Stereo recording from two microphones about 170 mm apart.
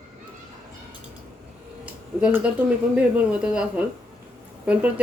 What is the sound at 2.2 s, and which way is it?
Speech, 5° right (ahead or behind).